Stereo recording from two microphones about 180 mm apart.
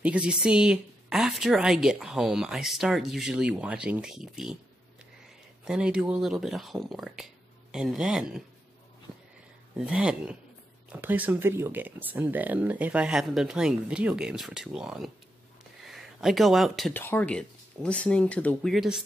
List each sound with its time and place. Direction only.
0.0 s speech: 5° right (ahead or behind)
5.7 s speech: 5° right (ahead or behind)
9.8 s speech: 5° right (ahead or behind)
16.9 s speech: 10° left (ahead or behind)